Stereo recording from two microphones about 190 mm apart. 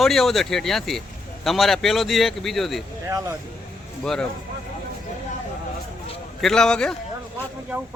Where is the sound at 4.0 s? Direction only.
5° left (ahead or behind).